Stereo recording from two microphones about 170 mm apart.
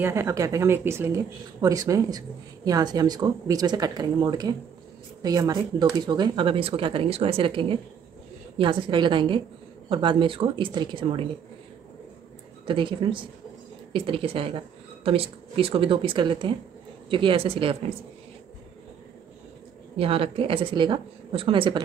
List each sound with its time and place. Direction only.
0.0 s speech: 15° right (ahead or behind)
12.6 s speech: 30° right (ahead or behind)
20.0 s speech: 35° right (ahead or behind)